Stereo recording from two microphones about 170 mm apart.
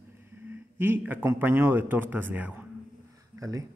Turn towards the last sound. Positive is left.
turn(degrees=-20)  # may be behind; listen again after turning